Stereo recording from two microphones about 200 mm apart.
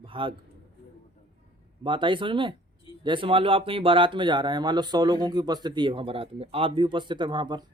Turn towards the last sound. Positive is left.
turn(degrees=-20)  # may be behind; listen again after turning